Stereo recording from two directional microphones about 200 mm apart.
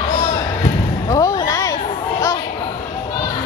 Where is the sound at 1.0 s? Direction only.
15° left (ahead or behind).